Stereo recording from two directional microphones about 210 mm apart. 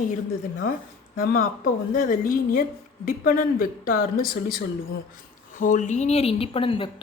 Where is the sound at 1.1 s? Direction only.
40° left (ahead or behind).